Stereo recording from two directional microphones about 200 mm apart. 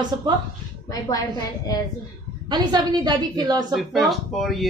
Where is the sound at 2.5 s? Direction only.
20° right (ahead or behind).